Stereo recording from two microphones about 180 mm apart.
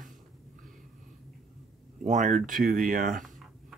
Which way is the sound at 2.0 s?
40° right (ahead or behind).